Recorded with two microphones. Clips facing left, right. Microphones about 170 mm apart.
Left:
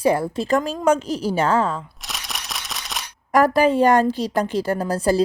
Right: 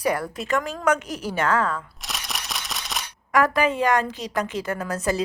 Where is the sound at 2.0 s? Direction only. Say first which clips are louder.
Even; centre (ahead or behind).